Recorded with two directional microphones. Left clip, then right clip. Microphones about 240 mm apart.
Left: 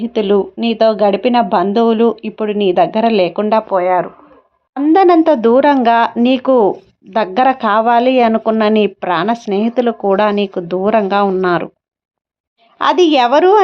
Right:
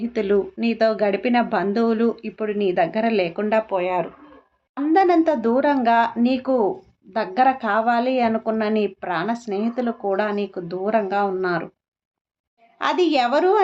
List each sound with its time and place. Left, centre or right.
0.0 s speech: left
4.8 s a woman's voice: left
12.8 s speech: left